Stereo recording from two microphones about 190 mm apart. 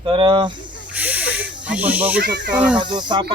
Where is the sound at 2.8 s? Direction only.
25° right (ahead or behind).